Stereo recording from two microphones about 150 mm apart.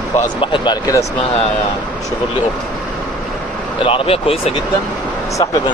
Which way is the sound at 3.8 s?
40° left (ahead or behind).